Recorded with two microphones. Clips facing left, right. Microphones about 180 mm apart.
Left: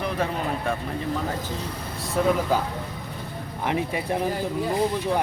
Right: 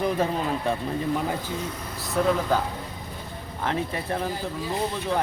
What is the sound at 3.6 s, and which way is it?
Speech, 15° left (ahead or behind).